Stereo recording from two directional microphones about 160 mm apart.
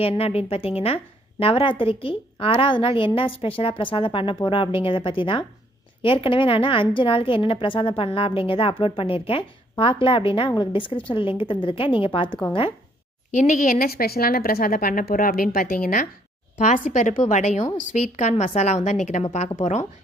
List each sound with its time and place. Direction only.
0.0 s a woman's voice: 40° left (ahead or behind)
13.3 s a woman's voice: 50° left (ahead or behind)